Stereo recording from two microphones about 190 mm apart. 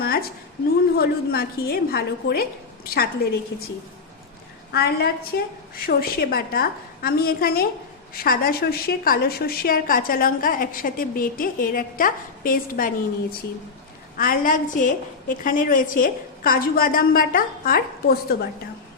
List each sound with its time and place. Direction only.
0.0 s a sound: 55° left (ahead or behind)
0.9 s a woman's voice: 55° left (ahead or behind)
4.7 s a woman's voice: 55° left (ahead or behind)
14.2 s a woman's voice: 45° left (ahead or behind)